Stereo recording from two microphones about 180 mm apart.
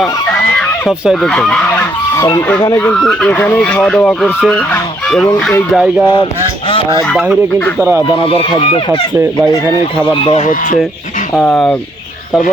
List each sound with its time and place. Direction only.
0.5 s fowl: centre (ahead or behind); by 2.4 s 15° left (ahead or behind)
2.6 s speech: 20° left (ahead or behind)
2.8 s speech: 5° left (ahead or behind)
4.7 s goose: 5° left (ahead or behind)
5.7 s speech: 5° right (ahead or behind)
7.8 s speech: 15° right (ahead or behind)
8.2 s speech: 30° left (ahead or behind)
10.2 s speech: 35° left (ahead or behind)
11.3 s speech: 5° left (ahead or behind)